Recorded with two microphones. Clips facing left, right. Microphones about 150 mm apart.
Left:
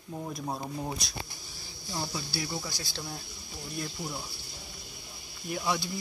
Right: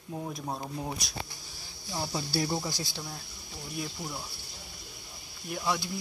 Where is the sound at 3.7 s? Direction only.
Centre (ahead or behind).